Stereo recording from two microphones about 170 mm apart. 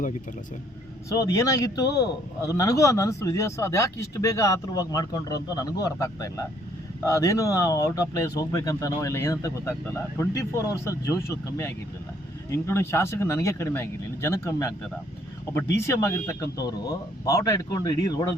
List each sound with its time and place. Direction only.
1.1 s a man's voice: 20° left (ahead or behind)
15.8 s a man's voice: 15° left (ahead or behind)